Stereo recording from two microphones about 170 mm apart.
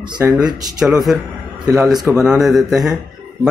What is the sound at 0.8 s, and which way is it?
Speech, centre (ahead or behind).